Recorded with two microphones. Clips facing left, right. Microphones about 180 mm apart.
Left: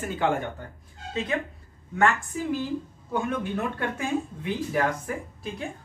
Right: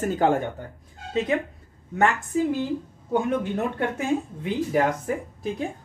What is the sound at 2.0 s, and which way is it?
Speech, 20° right (ahead or behind).